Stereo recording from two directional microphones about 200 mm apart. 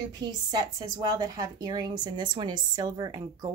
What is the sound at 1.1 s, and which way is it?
Speech, 20° right (ahead or behind).